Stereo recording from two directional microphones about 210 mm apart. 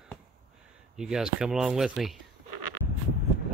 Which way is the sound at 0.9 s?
Centre (ahead or behind).